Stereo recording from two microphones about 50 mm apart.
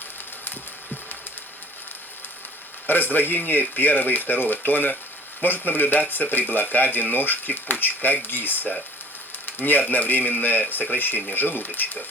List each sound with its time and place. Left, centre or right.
2.8 s speech: left